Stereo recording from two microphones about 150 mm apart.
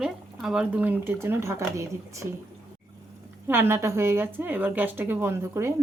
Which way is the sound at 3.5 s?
15° right (ahead or behind).